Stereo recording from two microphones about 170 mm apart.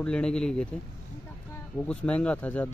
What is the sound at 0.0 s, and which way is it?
Speech, 5° left (ahead or behind).